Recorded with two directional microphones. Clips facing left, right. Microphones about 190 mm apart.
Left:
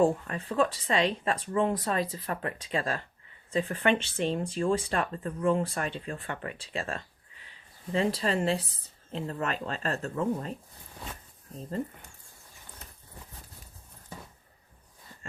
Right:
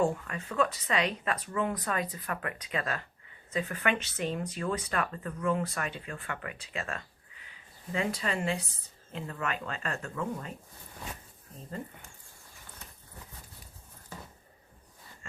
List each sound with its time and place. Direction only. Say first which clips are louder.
0.0 s speech: left 4 dB; 35° left (ahead or behind)